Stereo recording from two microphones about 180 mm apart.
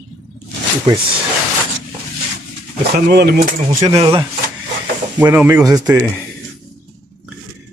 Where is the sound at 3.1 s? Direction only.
65° right (ahead or behind).